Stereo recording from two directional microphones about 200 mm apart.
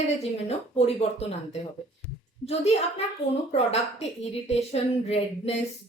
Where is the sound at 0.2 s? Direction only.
30° left (ahead or behind).